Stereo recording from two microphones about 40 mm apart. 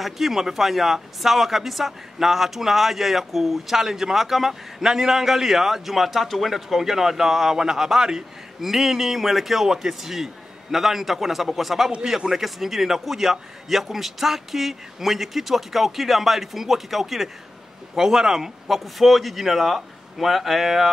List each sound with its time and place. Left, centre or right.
0.0 s speech: centre